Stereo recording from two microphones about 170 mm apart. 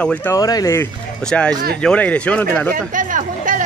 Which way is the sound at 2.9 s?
50° right (ahead or behind).